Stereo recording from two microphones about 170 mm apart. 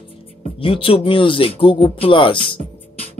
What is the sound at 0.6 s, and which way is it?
Speech, 35° left (ahead or behind).